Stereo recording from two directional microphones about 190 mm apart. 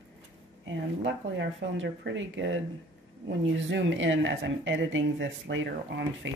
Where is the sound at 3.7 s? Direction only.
80° right.